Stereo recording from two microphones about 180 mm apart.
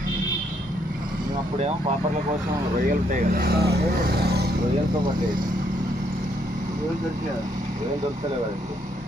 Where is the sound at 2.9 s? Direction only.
55° right (ahead or behind).